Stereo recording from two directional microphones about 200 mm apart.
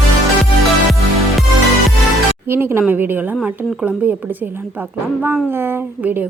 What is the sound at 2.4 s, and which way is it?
A woman's voice, 10° right (ahead or behind).